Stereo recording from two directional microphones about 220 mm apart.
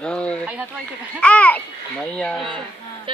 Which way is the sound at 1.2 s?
5° left (ahead or behind).